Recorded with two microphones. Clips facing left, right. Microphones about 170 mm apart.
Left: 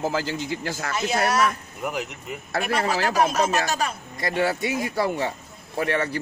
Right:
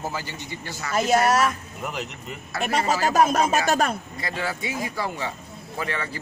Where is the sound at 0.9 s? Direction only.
45° right (ahead or behind).